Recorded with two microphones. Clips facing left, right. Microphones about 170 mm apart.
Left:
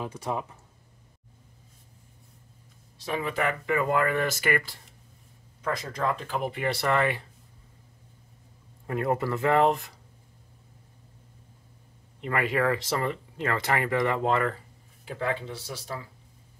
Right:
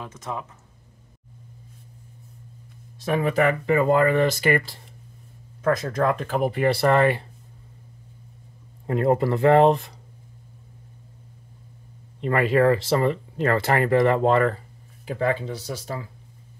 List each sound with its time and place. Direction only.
0.0 s speech: 15° left (ahead or behind)
3.0 s speech: 50° right (ahead or behind); by 4.6 s 30° right (ahead or behind)
5.6 s speech: 50° right (ahead or behind)
8.8 s speech: 30° right (ahead or behind)
12.2 s speech: 35° right (ahead or behind)